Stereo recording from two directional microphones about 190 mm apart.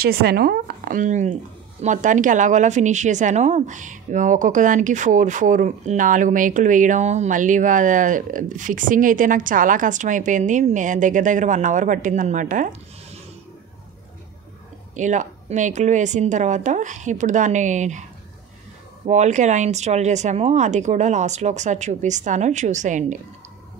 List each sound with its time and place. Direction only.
0.0 s speech: 55° right (ahead or behind)
15.0 s speech: 40° right (ahead or behind)
19.0 s speech: 40° right (ahead or behind)